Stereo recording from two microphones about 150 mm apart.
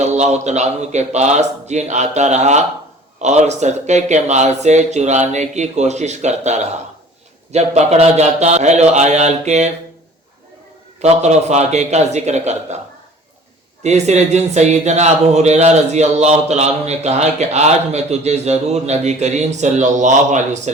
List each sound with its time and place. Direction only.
0.0 s speech: 50° right (ahead or behind)
11.0 s speech: 50° right (ahead or behind)
13.8 s speech: 50° right (ahead or behind)